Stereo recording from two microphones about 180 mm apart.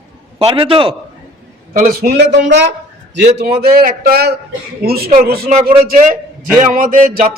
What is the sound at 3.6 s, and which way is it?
A man's voice, 55° right (ahead or behind).